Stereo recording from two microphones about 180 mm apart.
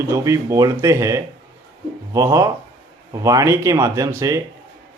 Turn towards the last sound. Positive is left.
turn(degrees=-15)  # may be behind; listen again after turning